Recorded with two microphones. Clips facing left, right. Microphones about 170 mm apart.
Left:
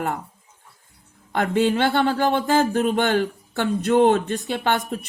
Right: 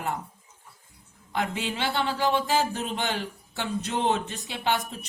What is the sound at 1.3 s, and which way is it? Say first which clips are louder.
Speech: left 10 dB; 55° left (ahead or behind).